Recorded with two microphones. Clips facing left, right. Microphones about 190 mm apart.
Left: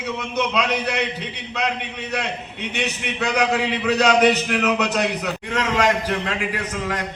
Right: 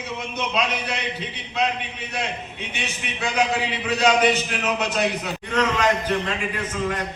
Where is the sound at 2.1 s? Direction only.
65° left (ahead or behind).